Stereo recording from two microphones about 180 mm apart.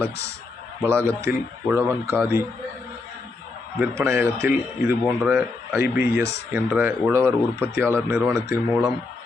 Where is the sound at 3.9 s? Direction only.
15° right (ahead or behind).